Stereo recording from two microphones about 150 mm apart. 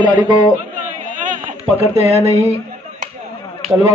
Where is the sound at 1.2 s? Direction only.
60° right (ahead or behind).